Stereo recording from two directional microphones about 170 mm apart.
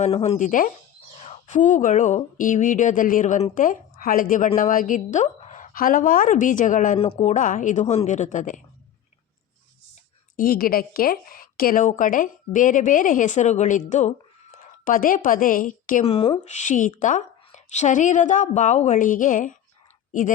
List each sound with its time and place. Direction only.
0.0 s speech: 40° left (ahead or behind)
1.1 s speech: 40° left (ahead or behind)
7.0 s speech: 40° left (ahead or behind)
10.3 s a woman's voice: 60° left (ahead or behind)
16.0 s speech: 35° left (ahead or behind); by 19.5 s 50° left (ahead or behind)